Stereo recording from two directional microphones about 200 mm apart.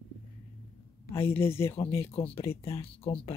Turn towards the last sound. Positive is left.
turn(degrees=30)  # may be behind; listen again after turning